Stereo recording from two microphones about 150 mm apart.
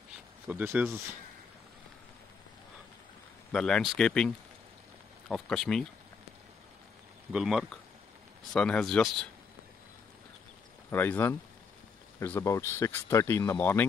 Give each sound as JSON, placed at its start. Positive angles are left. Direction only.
{"t": 0.5, "sound": "speech", "side_deg": -10}
{"t": 3.5, "sound": "speech", "side_deg": 5}
{"t": 5.3, "sound": "speech", "side_deg": 5}
{"t": 7.3, "sound": "speech", "side_deg": 0}
{"t": 10.9, "sound": "speech", "side_deg": 15}